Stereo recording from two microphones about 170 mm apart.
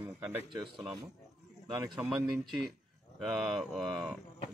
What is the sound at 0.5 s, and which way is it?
Speech, 25° right (ahead or behind).